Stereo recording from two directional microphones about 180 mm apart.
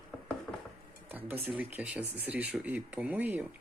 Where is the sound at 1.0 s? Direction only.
10° right (ahead or behind).